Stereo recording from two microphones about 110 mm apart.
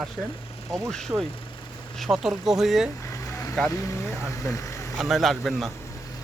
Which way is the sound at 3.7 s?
30° left (ahead or behind).